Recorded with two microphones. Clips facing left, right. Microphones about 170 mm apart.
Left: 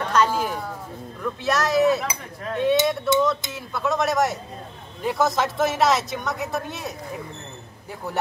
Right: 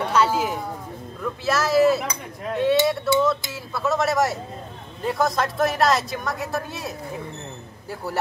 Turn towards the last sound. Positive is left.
turn(degrees=0)  # may be behind; listen again after turning